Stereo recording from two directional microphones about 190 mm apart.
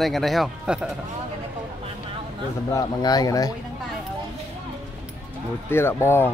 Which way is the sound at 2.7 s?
20° left (ahead or behind).